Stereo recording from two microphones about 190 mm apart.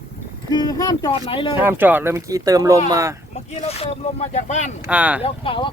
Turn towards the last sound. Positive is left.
turn(degrees=25)  # may be behind; listen again after turning